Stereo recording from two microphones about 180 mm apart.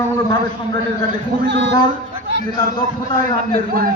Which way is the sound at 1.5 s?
80° right.